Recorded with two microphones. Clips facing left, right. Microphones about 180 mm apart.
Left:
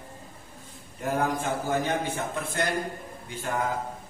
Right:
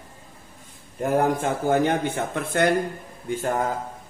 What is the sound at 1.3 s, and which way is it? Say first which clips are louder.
A man's voice: right 6 dB; 55° right (ahead or behind).